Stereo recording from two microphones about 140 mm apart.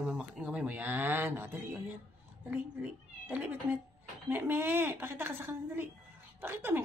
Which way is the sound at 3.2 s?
10° right (ahead or behind).